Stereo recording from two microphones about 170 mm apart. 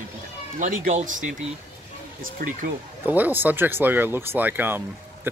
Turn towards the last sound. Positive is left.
turn(degrees=-10)  # may be behind; listen again after turning